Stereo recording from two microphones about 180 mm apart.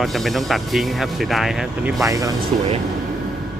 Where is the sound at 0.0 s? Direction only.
Centre (ahead or behind).